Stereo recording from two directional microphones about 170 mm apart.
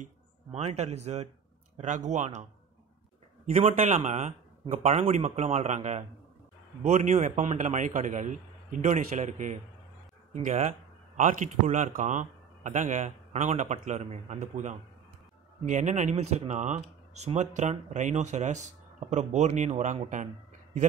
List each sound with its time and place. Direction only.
0.0 s speech: 40° right (ahead or behind)
3.5 s speech: 40° right (ahead or behind)